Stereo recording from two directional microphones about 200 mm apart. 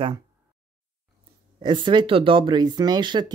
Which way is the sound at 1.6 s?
25° right (ahead or behind).